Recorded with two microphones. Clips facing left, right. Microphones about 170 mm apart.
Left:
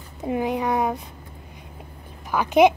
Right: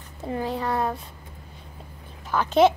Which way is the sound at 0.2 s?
15° left (ahead or behind).